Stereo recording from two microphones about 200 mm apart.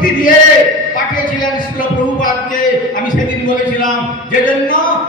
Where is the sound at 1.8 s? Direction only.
45° left (ahead or behind).